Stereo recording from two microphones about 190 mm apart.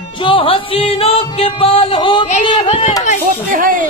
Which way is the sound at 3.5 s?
45° right (ahead or behind).